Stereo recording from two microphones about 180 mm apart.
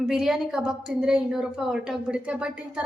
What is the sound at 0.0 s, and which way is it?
A woman's voice, centre (ahead or behind).